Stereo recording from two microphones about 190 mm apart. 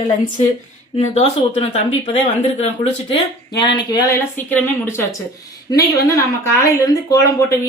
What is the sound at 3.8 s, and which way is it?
A woman's voice, 20° left (ahead or behind).